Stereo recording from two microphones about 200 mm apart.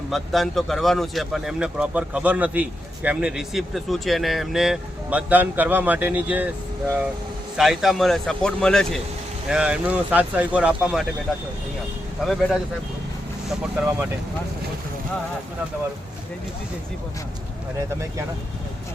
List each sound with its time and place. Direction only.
0.1 s speech: centre (ahead or behind)
7.5 s speech: centre (ahead or behind)